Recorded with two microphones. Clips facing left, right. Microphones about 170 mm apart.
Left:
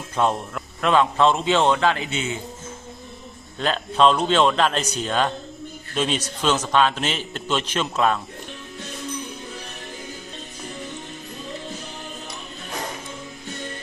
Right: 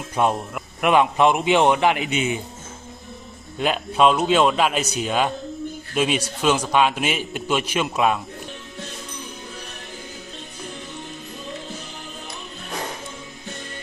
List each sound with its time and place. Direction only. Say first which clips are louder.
0.2 s a man's voice: right 1 dB; 10° right (ahead or behind)
3.6 s a man's voice: even; 10° right (ahead or behind)